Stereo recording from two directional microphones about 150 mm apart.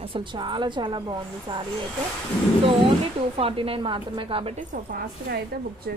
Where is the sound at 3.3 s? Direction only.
40° right (ahead or behind).